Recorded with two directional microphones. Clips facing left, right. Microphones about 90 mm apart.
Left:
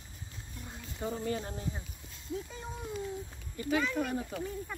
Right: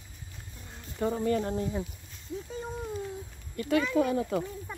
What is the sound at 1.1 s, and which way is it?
Speech, 50° right (ahead or behind).